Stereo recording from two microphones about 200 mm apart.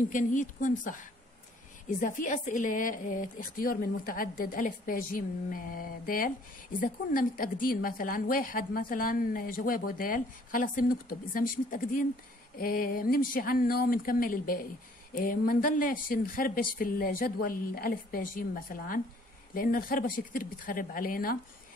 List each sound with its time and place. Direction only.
0.1 s a woman's voice: 40° left (ahead or behind)